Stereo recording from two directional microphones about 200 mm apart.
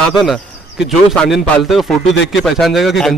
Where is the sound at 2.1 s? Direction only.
65° left (ahead or behind).